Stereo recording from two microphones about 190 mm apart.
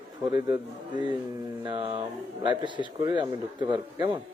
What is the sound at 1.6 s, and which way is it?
A man's voice, 25° right (ahead or behind).